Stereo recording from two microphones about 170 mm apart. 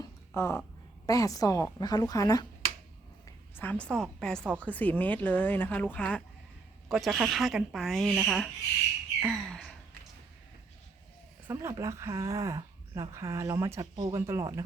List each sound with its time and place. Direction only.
0.3 s a woman's voice: 15° left (ahead or behind)
3.2 s a woman's voice: 10° left (ahead or behind)
9.2 s bird: 5° left (ahead or behind)
11.4 s speech: 15° right (ahead or behind)